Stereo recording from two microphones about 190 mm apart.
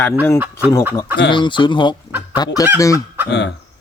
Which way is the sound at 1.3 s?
25° left (ahead or behind).